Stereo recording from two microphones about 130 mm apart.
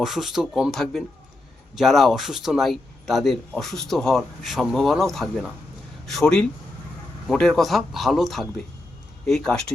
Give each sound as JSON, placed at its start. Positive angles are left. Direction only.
{"t": 0.0, "sound": "speech", "side_deg": 0}